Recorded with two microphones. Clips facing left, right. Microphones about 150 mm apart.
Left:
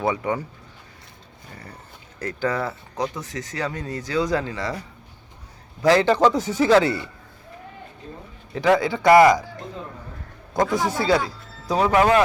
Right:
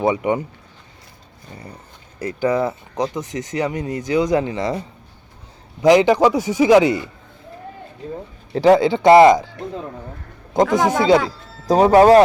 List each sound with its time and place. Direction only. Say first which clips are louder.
0.0 s speech: right 5 dB; 20° right (ahead or behind)
2.1 s a man's voice: right 6 dB; 15° right (ahead or behind)
8.5 s speech: right 6 dB; 30° right (ahead or behind)
10.7 s speech: right 6 dB; 90° right
11.6 s speech: right 7 dB; 40° right (ahead or behind)